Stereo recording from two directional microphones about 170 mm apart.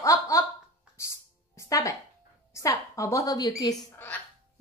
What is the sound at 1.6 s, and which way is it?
Speech, 20° left (ahead or behind).